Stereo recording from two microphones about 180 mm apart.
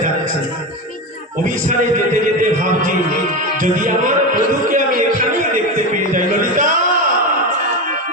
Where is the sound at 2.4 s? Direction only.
50° right (ahead or behind).